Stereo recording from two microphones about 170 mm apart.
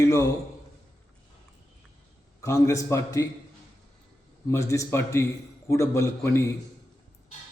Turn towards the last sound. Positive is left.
turn(degrees=20)  # may be behind; listen again after turning